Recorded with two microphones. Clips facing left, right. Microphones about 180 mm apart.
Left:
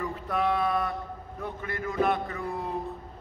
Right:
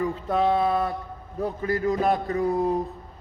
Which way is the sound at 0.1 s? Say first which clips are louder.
Right 5 dB; 25° right (ahead or behind).